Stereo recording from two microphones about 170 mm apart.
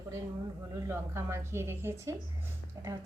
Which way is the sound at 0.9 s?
15° right (ahead or behind).